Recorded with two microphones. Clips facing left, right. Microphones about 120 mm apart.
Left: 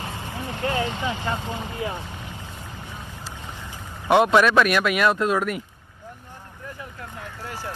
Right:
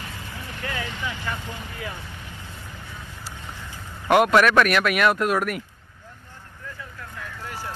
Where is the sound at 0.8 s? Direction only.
20° left (ahead or behind).